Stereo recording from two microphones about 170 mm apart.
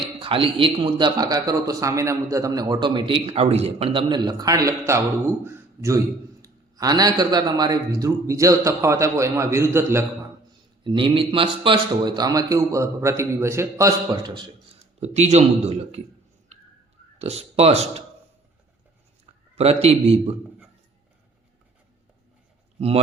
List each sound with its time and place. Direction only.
0.2 s speech: 30° right (ahead or behind); by 10.0 s 15° right (ahead or behind)
10.8 s speech: 30° right (ahead or behind)
15.0 s a man's voice: 40° right (ahead or behind)
17.2 s a man's voice: 35° right (ahead or behind)
19.5 s a man's voice: 35° right (ahead or behind)